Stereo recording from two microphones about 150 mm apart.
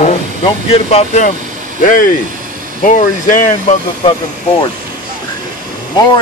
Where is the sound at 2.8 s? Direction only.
60° left (ahead or behind).